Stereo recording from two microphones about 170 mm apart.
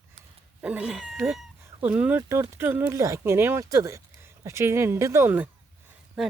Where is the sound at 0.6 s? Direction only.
10° right (ahead or behind).